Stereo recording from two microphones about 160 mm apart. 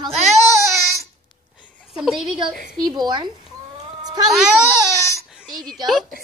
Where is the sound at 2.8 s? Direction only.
25° right (ahead or behind).